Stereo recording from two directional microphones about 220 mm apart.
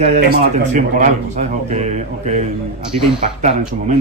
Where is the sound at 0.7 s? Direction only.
35° right (ahead or behind).